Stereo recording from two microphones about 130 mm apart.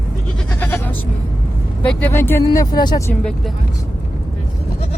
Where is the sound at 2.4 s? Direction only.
30° left (ahead or behind).